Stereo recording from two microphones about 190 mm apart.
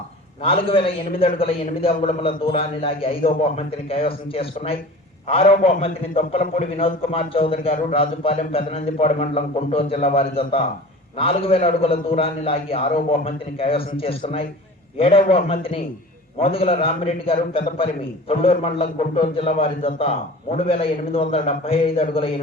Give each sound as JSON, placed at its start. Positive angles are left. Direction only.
{"t": 0.4, "sound": "a man's voice", "side_deg": 30}